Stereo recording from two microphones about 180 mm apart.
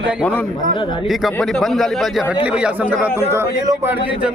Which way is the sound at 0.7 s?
30° left (ahead or behind).